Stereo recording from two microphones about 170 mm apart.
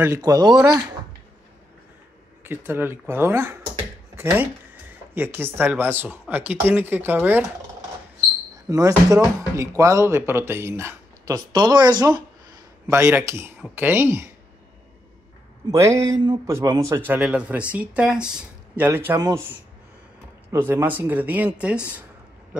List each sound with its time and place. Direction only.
0.0 s speech: 20° right (ahead or behind)
0.6 s speech: 5° right (ahead or behind)
2.4 s speech: 15° right (ahead or behind)
5.1 s speech: 15° right (ahead or behind)
8.6 s speech: 20° right (ahead or behind)
15.7 s speech: 15° right (ahead or behind)
16.9 s speech: 10° right (ahead or behind)
20.5 s speech: 15° right (ahead or behind)